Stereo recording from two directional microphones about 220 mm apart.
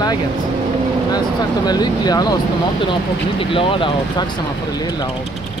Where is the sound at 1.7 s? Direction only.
20° left (ahead or behind).